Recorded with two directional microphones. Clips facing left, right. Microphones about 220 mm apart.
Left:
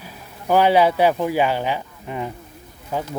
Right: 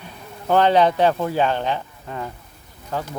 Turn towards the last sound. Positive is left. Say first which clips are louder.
# left 1 dB
turn(degrees=10)  # may be behind; listen again after turning